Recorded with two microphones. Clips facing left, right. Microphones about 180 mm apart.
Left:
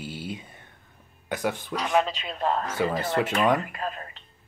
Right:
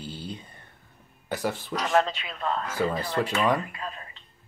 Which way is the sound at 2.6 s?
20° left (ahead or behind).